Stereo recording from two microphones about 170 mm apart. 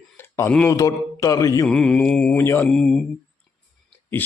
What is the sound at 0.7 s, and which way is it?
Mantra, 20° left (ahead or behind).